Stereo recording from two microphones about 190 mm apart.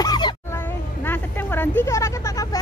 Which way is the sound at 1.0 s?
10° left (ahead or behind).